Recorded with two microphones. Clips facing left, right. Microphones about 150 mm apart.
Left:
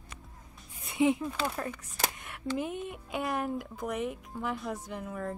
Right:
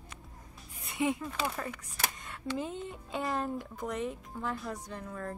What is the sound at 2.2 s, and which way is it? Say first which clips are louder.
Speech: left 2 dB; 15° left (ahead or behind).